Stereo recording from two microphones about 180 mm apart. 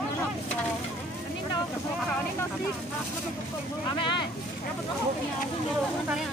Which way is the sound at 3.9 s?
25° left (ahead or behind).